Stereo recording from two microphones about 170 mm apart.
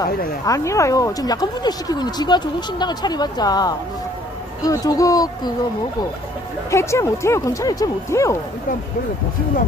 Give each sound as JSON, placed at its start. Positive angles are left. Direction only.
{"t": 0.5, "sound": "speech", "side_deg": 20}
{"t": 6.7, "sound": "speech", "side_deg": 15}